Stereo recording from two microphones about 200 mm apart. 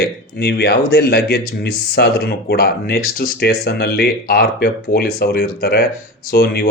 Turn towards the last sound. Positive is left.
turn(degrees=55)  # may be behind; listen again after turning